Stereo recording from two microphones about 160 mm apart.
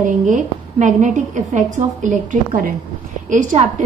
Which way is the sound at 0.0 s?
50° right (ahead or behind).